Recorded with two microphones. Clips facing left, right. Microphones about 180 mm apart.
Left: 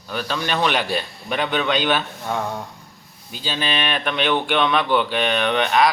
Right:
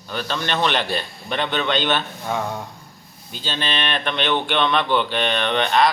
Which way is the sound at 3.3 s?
10° left (ahead or behind).